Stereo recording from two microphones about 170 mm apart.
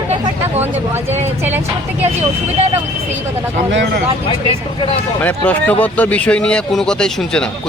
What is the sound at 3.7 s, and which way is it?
Speech, 90° right.